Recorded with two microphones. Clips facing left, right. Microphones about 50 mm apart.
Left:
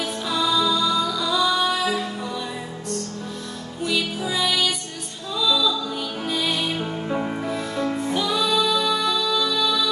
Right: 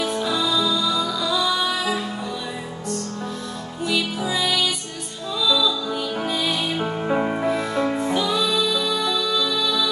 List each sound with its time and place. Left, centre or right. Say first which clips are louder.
0.0 s music: right 2 dB; centre
3.8 s music: right 1 dB; centre
6.8 s music: right 4 dB; right
7.9 s music: right 2 dB; centre